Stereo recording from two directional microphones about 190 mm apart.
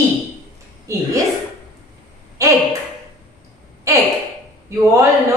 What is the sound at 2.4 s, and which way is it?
Speech, 15° right (ahead or behind).